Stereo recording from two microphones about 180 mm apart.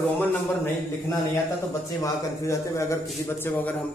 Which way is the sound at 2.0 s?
15° left (ahead or behind).